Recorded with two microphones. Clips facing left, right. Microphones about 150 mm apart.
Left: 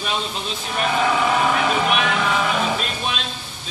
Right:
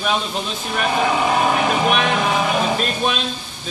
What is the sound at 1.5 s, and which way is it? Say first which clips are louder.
Vehicle: right 2 dB; 40° right (ahead or behind).